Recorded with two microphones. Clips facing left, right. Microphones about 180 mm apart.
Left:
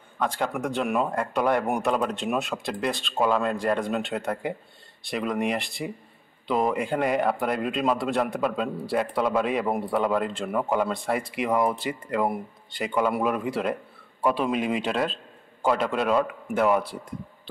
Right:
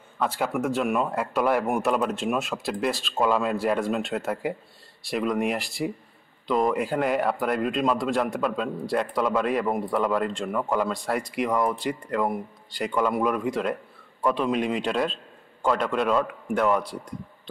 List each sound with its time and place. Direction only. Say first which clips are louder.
0.2 s a man's voice: right 1 dB; 5° right (ahead or behind)